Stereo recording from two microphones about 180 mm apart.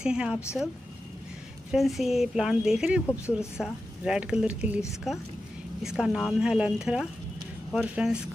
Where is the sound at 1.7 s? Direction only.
Centre (ahead or behind).